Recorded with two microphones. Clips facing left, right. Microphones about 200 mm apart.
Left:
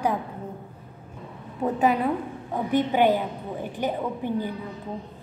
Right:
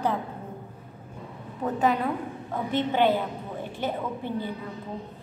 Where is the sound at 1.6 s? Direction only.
15° left (ahead or behind).